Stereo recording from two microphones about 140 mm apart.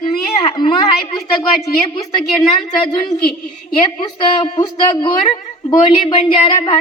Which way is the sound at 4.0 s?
35° left (ahead or behind).